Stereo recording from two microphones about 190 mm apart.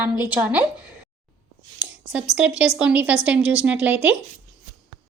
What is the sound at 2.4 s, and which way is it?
A woman's voice, 5° right (ahead or behind).